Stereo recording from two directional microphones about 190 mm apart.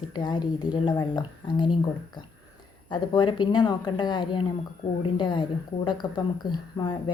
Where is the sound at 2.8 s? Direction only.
25° left (ahead or behind).